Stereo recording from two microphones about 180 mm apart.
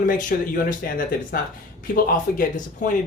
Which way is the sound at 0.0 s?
45° left (ahead or behind).